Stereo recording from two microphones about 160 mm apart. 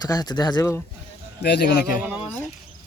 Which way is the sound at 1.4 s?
90° left.